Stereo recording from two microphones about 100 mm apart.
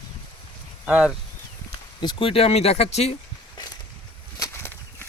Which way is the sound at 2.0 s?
45° left (ahead or behind).